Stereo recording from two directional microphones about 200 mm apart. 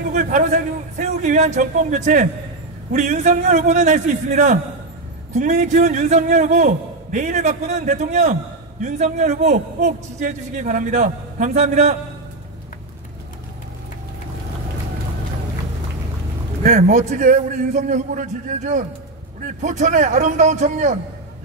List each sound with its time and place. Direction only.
0.1 s a man's voice: 40° right (ahead or behind)
16.6 s a man's voice: 35° right (ahead or behind)